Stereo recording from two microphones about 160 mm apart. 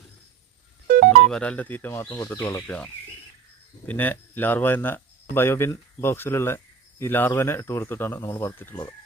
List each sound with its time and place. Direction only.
1.2 s speech: 5° left (ahead or behind)